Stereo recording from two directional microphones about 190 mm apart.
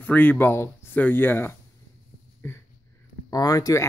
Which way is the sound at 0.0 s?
10° left (ahead or behind).